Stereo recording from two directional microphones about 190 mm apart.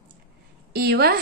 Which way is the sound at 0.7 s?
55° right (ahead or behind).